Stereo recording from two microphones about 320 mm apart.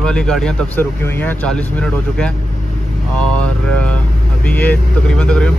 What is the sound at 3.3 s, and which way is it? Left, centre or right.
Speech, centre.